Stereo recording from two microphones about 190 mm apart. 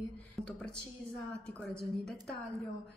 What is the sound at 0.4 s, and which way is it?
A woman's voice, 5° left (ahead or behind).